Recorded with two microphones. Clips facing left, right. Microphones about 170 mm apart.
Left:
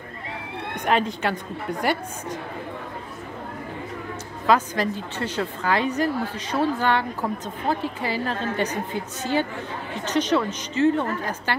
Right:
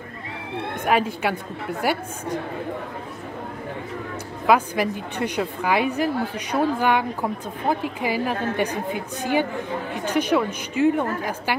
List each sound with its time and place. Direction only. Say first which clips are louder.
0.8 s a woman's voice: right 1 dB; 5° right (ahead or behind)
4.5 s a woman's voice: right 1 dB; 10° right (ahead or behind)